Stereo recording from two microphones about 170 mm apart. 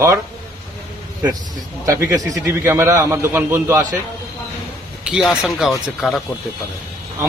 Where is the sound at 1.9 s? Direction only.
15° right (ahead or behind).